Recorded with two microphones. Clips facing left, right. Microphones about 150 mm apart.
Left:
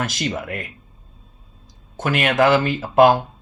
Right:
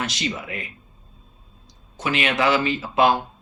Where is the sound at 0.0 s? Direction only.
50° left (ahead or behind).